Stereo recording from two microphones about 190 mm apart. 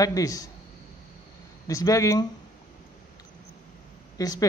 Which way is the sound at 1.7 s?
20° left (ahead or behind).